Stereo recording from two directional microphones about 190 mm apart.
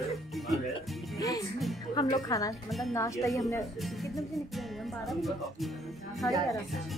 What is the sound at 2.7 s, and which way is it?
Speech, centre (ahead or behind).